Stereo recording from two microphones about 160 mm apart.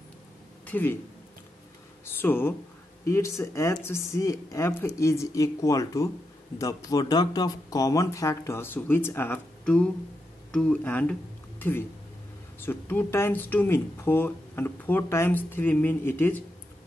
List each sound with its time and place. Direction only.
0.7 s speech: 10° left (ahead or behind)
2.1 s speech: 15° left (ahead or behind)
12.5 s speech: 15° left (ahead or behind)